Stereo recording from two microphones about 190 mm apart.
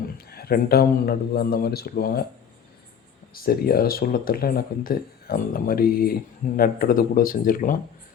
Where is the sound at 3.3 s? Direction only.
50° left (ahead or behind).